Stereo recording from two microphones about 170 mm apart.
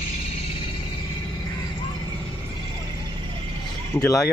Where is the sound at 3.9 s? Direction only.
20° left (ahead or behind).